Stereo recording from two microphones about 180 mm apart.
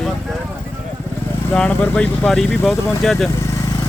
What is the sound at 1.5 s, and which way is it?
Speech, 5° left (ahead or behind).